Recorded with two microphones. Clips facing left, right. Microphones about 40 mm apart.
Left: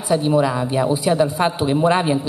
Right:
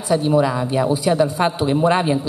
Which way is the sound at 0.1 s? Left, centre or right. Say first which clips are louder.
Even; centre.